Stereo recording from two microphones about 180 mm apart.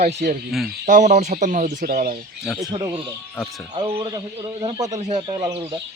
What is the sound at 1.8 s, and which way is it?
Speech, 55° right (ahead or behind).